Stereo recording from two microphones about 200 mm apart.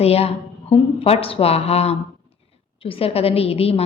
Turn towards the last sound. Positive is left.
turn(degrees=30)  # may be behind; listen again after turning